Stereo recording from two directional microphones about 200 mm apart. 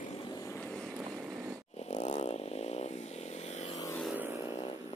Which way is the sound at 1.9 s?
35° left (ahead or behind).